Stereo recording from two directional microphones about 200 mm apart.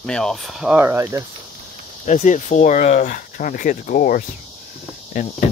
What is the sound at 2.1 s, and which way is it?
Speech, 35° left (ahead or behind).